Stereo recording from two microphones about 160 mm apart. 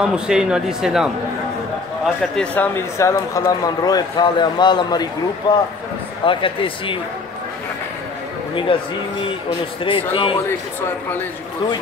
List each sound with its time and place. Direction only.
0.0 s speech: 5° right (ahead or behind)
2.3 s speech: 10° left (ahead or behind); by 7.0 s 35° left (ahead or behind)
8.7 s speech: 35° left (ahead or behind)